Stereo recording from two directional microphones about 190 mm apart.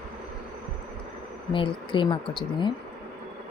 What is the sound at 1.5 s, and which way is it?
A woman's voice, 25° left (ahead or behind).